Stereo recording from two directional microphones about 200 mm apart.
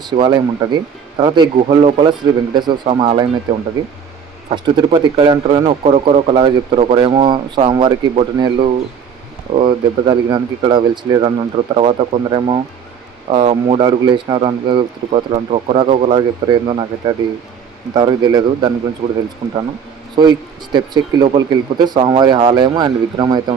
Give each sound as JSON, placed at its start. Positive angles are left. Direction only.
{"t": 0.1, "sound": "speech", "side_deg": -20}
{"t": 20.2, "sound": "speech", "side_deg": -20}